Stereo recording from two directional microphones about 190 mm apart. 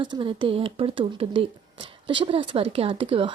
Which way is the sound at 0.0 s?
25° right (ahead or behind).